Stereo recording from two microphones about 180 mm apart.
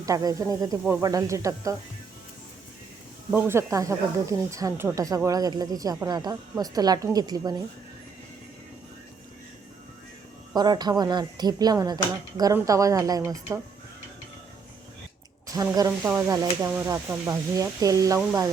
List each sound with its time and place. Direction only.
0.0 s speech: 20° right (ahead or behind)
3.3 s speech: 10° right (ahead or behind)
10.5 s speech: 20° right (ahead or behind)
15.5 s speech: 20° right (ahead or behind)